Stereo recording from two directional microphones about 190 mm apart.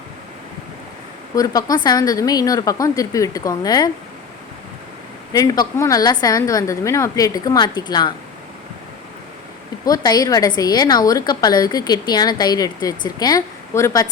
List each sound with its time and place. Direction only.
1.4 s a woman's voice: 20° left (ahead or behind)
5.3 s a woman's voice: 20° left (ahead or behind)
9.8 s a woman's voice: 20° left (ahead or behind)